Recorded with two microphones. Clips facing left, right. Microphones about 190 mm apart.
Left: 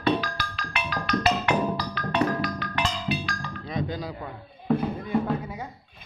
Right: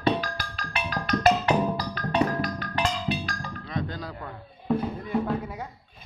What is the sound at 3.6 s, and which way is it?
Chink, 10° left (ahead or behind).